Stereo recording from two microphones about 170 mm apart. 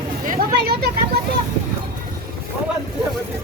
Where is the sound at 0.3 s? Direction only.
65° right (ahead or behind).